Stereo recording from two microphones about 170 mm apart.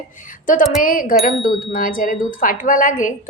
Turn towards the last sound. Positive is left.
turn(degrees=50)  # may be behind; listen again after turning